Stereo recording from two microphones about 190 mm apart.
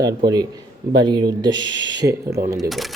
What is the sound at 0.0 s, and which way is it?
Speech, 20° right (ahead or behind).